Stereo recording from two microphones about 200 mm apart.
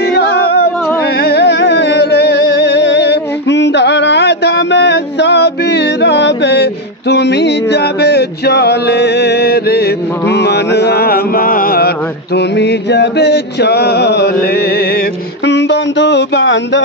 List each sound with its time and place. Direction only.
0.1 s music: 55° left (ahead or behind)
10.3 s mantra: 55° left (ahead or behind)
12.4 s chant: 60° left (ahead or behind)
15.4 s music: 60° left (ahead or behind)